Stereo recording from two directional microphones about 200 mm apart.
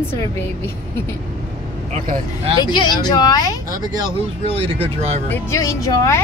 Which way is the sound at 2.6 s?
20° left (ahead or behind).